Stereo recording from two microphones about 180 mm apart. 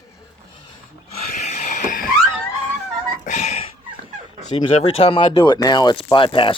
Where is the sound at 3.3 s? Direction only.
40° left (ahead or behind).